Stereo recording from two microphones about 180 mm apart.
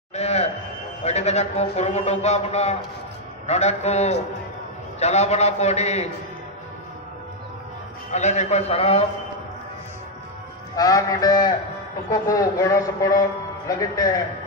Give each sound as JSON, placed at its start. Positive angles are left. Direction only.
{"t": 0.1, "sound": "a sound", "side_deg": 35}
{"t": 1.0, "sound": "a man's voice", "side_deg": 35}
{"t": 8.1, "sound": "a man's voice", "side_deg": 40}
{"t": 10.8, "sound": "speech", "side_deg": 20}